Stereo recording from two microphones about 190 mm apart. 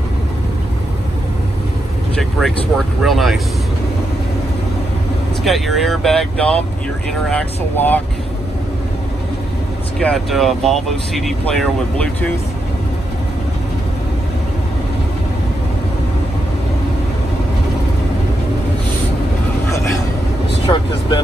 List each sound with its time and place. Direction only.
3.0 s speech: centre (ahead or behind)
5.4 s speech: centre (ahead or behind)
9.9 s speech: centre (ahead or behind)
20.6 s speech: 25° left (ahead or behind)